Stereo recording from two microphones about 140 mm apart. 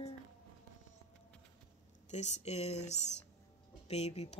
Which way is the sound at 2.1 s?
55° left (ahead or behind).